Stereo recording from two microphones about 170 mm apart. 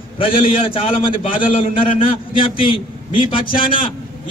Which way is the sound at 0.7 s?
30° left (ahead or behind).